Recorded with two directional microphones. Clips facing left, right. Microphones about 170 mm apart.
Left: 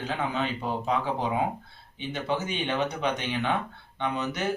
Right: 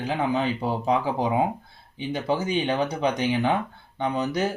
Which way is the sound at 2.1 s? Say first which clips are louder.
Right 4 dB; 35° right (ahead or behind).